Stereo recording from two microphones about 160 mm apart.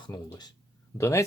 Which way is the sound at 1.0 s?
15° left (ahead or behind).